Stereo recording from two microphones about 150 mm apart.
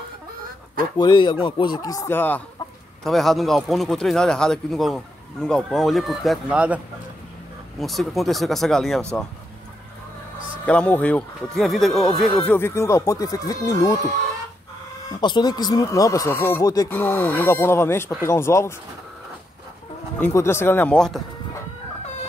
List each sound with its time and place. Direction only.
0.9 s speech: 30° left (ahead or behind); by 2.4 s 15° left (ahead or behind)
3.0 s speech: centre (ahead or behind)
7.8 s speech: centre (ahead or behind)
10.6 s speech: 10° left (ahead or behind)
12.4 s speech: 15° left (ahead or behind)
15.1 s speech: 30° left (ahead or behind)
20.2 s speech: 15° left (ahead or behind)